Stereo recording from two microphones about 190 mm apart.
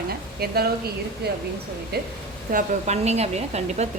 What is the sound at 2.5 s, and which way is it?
Speech, 40° right (ahead or behind).